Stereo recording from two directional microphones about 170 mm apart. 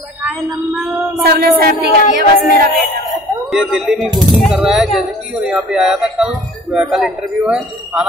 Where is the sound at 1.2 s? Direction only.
60° right (ahead or behind).